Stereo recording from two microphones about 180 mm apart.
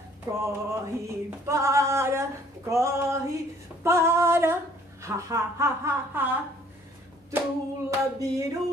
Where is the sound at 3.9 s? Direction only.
15° right (ahead or behind).